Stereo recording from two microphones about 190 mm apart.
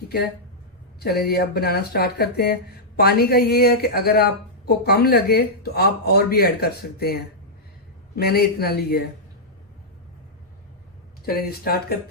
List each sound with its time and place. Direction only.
0.9 s speech: 55° left (ahead or behind)
11.3 s speech: 50° left (ahead or behind)